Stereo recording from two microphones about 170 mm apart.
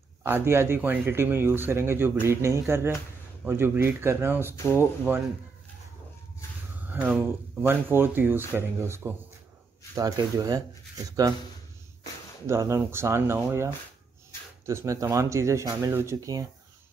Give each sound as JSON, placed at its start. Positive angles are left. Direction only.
{"t": 0.2, "sound": "speech", "side_deg": -15}
{"t": 6.9, "sound": "a sound", "side_deg": -10}
{"t": 7.6, "sound": "speech", "side_deg": -10}
{"t": 12.4, "sound": "speech", "side_deg": -15}
{"t": 14.7, "sound": "speech", "side_deg": -15}